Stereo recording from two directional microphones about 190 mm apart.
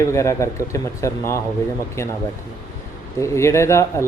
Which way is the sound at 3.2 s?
15° left (ahead or behind).